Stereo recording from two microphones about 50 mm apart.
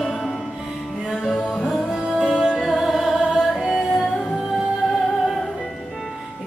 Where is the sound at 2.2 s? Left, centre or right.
Centre.